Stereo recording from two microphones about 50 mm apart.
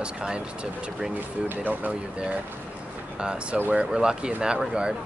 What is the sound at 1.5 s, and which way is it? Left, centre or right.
Speech, right.